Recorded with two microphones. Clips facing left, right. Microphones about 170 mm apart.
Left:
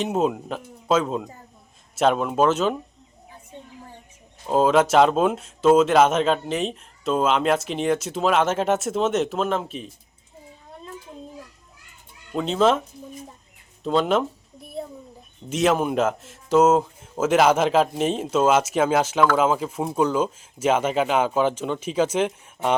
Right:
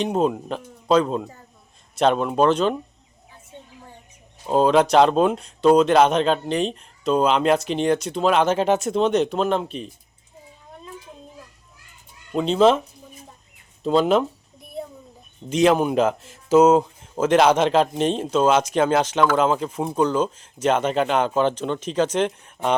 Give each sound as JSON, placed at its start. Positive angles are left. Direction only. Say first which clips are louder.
{"t": 0.0, "sound": "speech", "louder": "right 1 dB", "side_deg": 5}
{"t": 4.4, "sound": "speech", "louder": "right 1 dB", "side_deg": 5}
{"t": 12.3, "sound": "speech", "louder": "right 3 dB", "side_deg": 0}
{"t": 13.8, "sound": "speech", "louder": "right 3 dB", "side_deg": 0}
{"t": 15.4, "sound": "speech", "louder": "right 3 dB", "side_deg": 0}